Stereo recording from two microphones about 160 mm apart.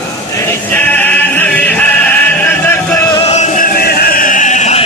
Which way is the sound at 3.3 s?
45° left (ahead or behind).